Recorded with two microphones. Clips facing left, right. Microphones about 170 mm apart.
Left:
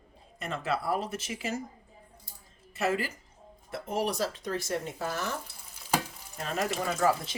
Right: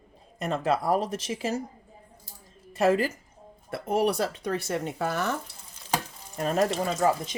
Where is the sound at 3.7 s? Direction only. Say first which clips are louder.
Right 6 dB; 60° right (ahead or behind).